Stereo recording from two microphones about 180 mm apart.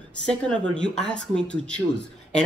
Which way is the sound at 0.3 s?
5° left (ahead or behind).